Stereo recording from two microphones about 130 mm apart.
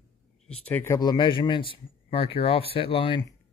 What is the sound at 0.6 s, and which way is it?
Speech, 15° left (ahead or behind).